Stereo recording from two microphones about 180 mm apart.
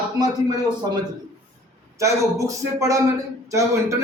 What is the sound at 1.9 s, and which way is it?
A man's voice, 15° right (ahead or behind).